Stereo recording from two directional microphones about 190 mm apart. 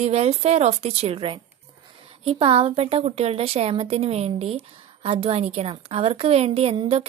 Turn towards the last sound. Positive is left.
turn(degrees=-30)  # may be behind; listen again after turning